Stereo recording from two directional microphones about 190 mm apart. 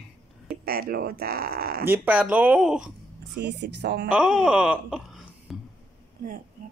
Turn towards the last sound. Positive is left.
turn(degrees=0)  # may be behind; listen again after turning